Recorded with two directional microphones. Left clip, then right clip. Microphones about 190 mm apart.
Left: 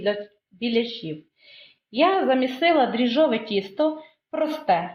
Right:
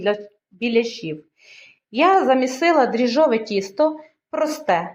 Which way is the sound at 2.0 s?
30° right (ahead or behind).